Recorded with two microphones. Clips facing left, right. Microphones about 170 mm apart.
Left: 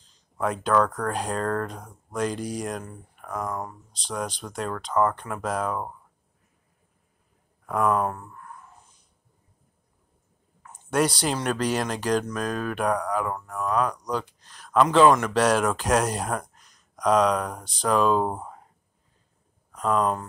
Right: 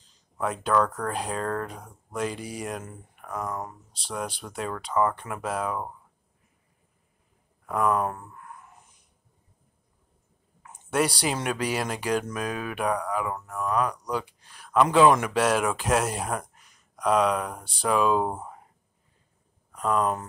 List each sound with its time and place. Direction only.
0.4 s speech: centre (ahead or behind)
7.6 s speech: centre (ahead or behind)
8.1 s speech: 20° right (ahead or behind)
10.7 s a sound: 5° right (ahead or behind)
11.4 s speech: 10° right (ahead or behind)